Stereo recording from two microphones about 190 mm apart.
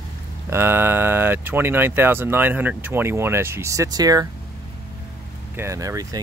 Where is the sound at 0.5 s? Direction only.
10° right (ahead or behind).